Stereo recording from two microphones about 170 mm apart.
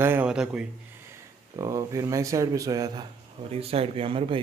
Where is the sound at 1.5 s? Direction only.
20° right (ahead or behind).